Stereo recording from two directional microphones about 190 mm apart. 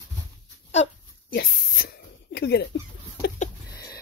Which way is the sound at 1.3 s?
50° left (ahead or behind).